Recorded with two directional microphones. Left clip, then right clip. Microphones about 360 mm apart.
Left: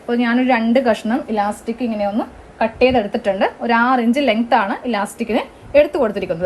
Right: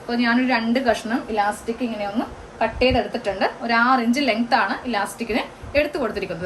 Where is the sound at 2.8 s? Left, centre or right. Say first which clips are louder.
Left 6 dB; centre.